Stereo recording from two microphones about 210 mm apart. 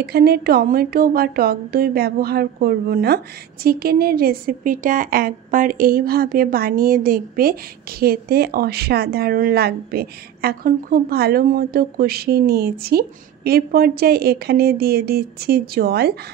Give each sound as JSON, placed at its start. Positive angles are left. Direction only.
{"t": 0.0, "sound": "speech", "side_deg": -50}